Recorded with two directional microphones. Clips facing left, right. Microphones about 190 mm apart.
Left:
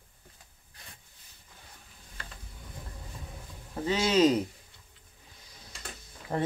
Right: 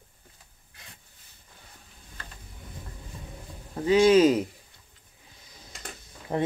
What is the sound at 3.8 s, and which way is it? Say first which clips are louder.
Speech: right 6 dB; 10° right (ahead or behind).